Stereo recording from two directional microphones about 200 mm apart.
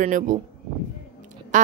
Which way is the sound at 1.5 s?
40° right (ahead or behind).